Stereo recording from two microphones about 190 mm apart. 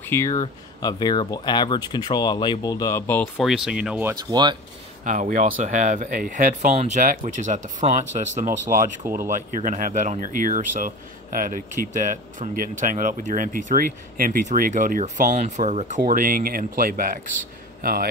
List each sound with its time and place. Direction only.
0.0 s speech: 15° left (ahead or behind)
3.3 s speech: centre (ahead or behind)
4.1 s speech: 20° right (ahead or behind)
5.0 s speech: 40° right (ahead or behind)